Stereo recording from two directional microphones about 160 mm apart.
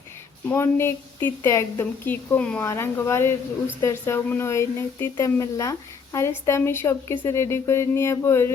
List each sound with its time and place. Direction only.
0.4 s a woman's voice: 15° left (ahead or behind)